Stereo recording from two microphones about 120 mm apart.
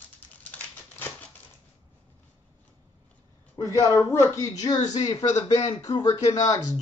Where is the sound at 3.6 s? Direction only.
25° left (ahead or behind).